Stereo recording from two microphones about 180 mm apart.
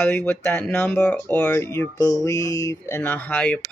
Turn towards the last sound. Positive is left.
turn(degrees=5)  # may be behind; listen again after turning